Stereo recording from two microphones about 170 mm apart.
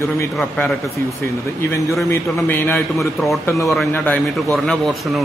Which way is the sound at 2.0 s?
15° left (ahead or behind).